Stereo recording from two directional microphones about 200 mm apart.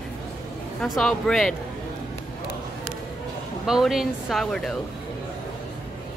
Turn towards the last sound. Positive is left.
turn(degrees=0)  # may be behind; listen again after turning